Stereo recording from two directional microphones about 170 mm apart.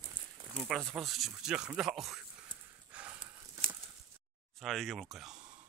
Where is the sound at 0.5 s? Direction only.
Centre (ahead or behind).